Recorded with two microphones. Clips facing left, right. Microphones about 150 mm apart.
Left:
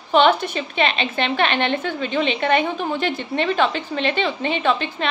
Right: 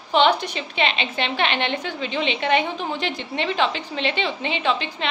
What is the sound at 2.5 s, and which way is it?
A woman's voice, 50° left (ahead or behind).